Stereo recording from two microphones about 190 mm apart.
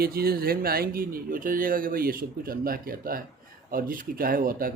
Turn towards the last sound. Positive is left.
turn(degrees=-50)  # may be behind; listen again after turning